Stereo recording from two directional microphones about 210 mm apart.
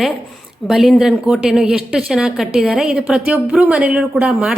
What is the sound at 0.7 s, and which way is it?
A woman's voice, centre (ahead or behind).